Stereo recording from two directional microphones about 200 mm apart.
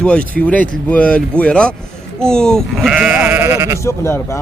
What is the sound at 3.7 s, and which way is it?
Speech, 15° left (ahead or behind).